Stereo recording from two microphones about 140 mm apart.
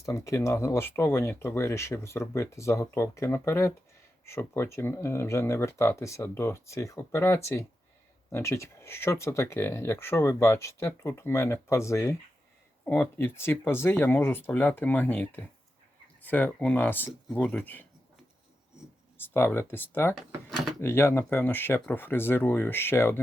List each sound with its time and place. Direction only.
0.0 s speech: 20° left (ahead or behind)
19.3 s speech: 15° left (ahead or behind)